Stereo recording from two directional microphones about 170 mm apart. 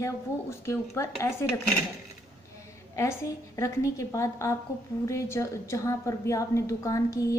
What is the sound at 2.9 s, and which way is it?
A woman's voice, 20° left (ahead or behind).